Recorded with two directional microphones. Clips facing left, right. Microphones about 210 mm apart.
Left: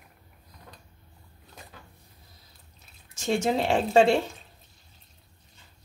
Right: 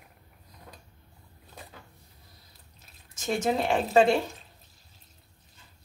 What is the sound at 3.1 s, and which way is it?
Speech, 30° left (ahead or behind).